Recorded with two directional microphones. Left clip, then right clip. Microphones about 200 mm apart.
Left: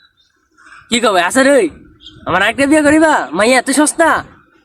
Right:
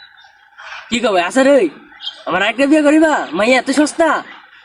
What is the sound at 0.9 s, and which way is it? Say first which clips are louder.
Speech: left 3 dB; 15° left (ahead or behind).